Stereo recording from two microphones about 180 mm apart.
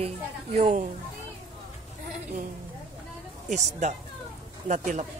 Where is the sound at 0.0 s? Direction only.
35° right (ahead or behind).